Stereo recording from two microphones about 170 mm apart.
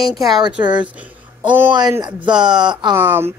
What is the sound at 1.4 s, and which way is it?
Speech, 10° right (ahead or behind).